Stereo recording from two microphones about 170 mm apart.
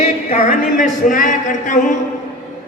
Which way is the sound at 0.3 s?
55° left (ahead or behind).